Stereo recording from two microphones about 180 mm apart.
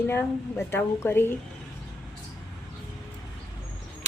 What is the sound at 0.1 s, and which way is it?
A woman's voice, 10° left (ahead or behind).